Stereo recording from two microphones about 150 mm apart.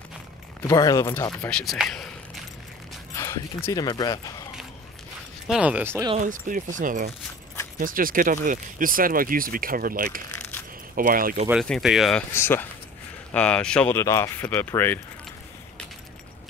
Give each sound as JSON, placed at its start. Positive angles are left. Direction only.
{"t": 0.7, "sound": "speech", "side_deg": 25}
{"t": 1.4, "sound": "speech", "side_deg": 5}
{"t": 3.2, "sound": "speech", "side_deg": 20}
{"t": 5.5, "sound": "speech", "side_deg": -10}
{"t": 6.1, "sound": "speech", "side_deg": -60}
{"t": 11.6, "sound": "speech", "side_deg": 0}
{"t": 12.2, "sound": "speech", "side_deg": 15}